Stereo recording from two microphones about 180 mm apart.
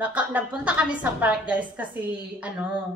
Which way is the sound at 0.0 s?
10° right (ahead or behind).